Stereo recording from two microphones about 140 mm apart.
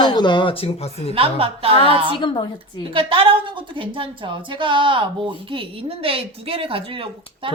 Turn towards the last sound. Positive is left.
turn(degrees=-40)  # may be behind; listen again after turning